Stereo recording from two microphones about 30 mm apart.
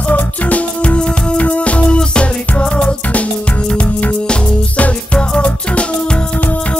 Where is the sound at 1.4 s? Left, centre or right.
Left.